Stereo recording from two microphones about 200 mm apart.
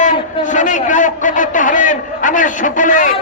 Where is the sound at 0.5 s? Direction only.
40° left (ahead or behind).